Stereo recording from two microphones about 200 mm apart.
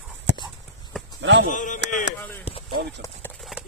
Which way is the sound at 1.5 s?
40° left (ahead or behind).